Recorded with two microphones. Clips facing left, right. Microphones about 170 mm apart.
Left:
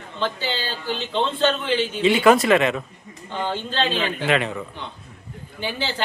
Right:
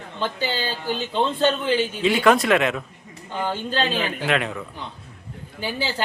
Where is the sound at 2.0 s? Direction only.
Centre (ahead or behind).